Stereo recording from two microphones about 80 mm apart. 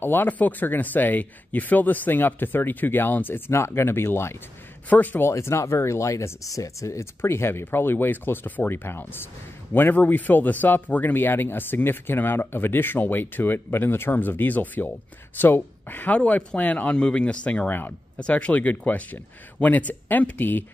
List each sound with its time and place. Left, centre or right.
0.0 s speech: left
4.8 s speech: left
5.3 s speech: left